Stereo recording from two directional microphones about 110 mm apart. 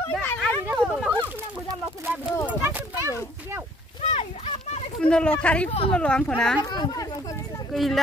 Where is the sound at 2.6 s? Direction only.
20° right (ahead or behind).